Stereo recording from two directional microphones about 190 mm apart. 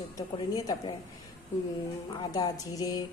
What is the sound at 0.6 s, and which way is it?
Speech, 20° left (ahead or behind).